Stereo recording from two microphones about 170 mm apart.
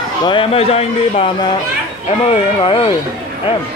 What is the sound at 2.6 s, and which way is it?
Speech, 30° left (ahead or behind).